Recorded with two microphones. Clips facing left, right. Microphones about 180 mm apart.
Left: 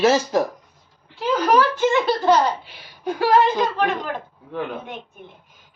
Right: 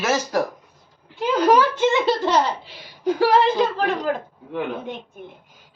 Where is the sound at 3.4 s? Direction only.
30° right (ahead or behind).